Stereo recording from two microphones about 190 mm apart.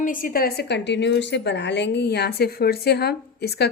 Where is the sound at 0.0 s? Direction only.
45° left (ahead or behind).